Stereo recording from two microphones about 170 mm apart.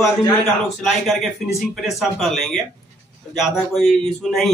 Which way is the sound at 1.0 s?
Centre (ahead or behind).